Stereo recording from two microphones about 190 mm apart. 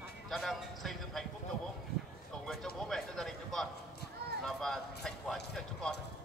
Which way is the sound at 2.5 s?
Centre (ahead or behind).